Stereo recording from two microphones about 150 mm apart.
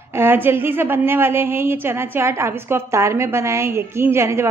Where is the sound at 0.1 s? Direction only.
15° right (ahead or behind).